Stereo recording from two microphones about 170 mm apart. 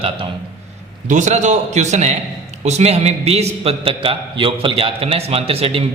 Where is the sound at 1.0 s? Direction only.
45° right (ahead or behind).